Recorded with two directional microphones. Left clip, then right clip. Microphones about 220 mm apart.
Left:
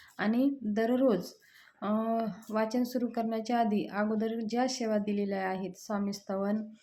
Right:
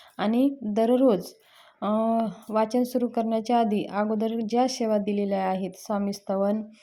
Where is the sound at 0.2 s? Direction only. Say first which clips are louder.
Right 5 dB; 30° right (ahead or behind).